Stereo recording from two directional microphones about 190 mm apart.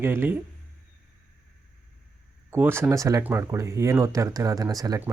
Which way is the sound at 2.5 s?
10° right (ahead or behind).